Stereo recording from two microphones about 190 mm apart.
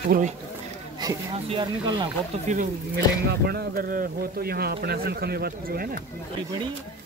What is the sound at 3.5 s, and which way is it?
Speech, 55° right (ahead or behind).